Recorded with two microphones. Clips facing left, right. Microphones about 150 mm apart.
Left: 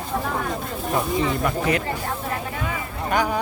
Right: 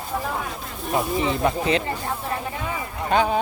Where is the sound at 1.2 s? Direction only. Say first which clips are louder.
Even; 25° right (ahead or behind).